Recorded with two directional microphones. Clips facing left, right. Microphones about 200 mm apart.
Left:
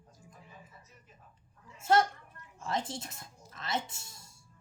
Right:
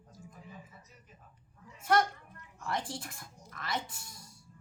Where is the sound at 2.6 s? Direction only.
25° left (ahead or behind).